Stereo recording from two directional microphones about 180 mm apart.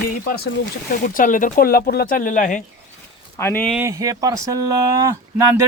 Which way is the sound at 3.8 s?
20° right (ahead or behind).